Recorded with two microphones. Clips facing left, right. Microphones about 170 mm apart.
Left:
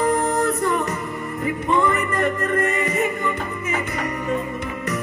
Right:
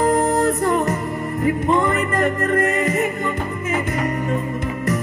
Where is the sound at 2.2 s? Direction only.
50° right (ahead or behind).